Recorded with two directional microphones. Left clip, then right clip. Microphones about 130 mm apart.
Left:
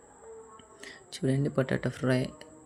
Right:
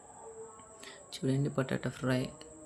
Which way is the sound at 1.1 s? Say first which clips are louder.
Left 4 dB; 25° left (ahead or behind).